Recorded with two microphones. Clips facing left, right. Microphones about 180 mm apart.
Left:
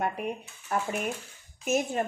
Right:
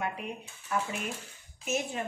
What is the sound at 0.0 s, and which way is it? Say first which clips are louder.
Speech: left 5 dB; 45° left (ahead or behind).